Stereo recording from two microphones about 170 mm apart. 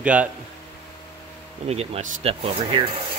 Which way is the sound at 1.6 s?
35° right (ahead or behind).